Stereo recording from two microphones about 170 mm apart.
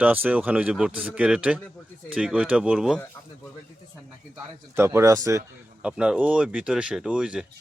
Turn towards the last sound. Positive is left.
turn(degrees=-5)  # may be behind; listen again after turning